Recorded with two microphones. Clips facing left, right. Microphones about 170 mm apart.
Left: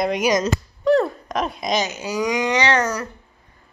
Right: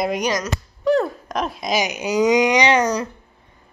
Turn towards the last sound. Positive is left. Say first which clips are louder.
# right 3 dB
turn(degrees=-15)  # may be behind; listen again after turning